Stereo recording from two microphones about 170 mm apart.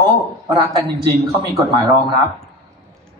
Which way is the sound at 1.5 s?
25° right (ahead or behind).